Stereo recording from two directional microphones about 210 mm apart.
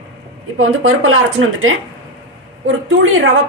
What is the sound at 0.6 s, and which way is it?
Speech, 80° right.